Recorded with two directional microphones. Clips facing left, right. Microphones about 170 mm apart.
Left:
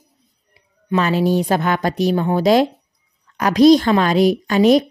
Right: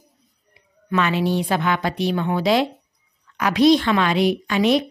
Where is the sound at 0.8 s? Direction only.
35° left (ahead or behind).